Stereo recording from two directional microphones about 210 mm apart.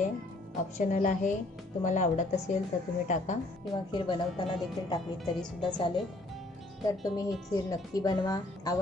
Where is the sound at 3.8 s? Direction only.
20° left (ahead or behind).